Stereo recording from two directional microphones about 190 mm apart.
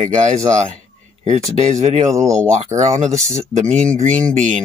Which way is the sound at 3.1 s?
15° right (ahead or behind).